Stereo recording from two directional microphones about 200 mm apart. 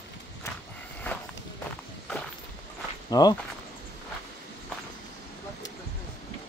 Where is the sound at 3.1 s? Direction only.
20° left (ahead or behind).